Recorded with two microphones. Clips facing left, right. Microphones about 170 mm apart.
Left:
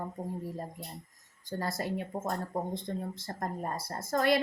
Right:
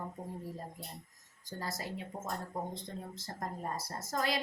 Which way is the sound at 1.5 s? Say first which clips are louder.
Left 7 dB; 55° left (ahead or behind).